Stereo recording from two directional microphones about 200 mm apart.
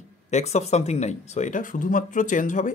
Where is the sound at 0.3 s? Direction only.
35° left (ahead or behind).